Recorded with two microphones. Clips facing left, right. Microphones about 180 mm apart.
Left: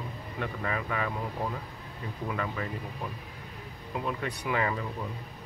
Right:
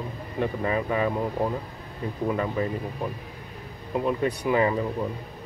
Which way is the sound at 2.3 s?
25° right (ahead or behind).